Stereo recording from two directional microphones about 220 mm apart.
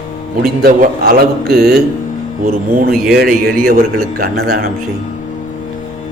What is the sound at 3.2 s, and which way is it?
A man's voice, 45° right (ahead or behind).